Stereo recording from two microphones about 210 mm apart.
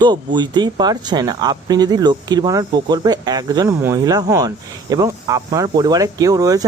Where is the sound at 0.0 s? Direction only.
20° right (ahead or behind).